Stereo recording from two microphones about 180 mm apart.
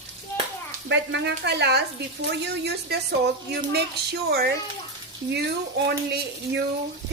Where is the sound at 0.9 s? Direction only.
75° right (ahead or behind).